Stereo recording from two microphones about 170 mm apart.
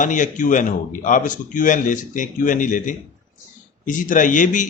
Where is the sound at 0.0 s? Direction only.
50° left (ahead or behind).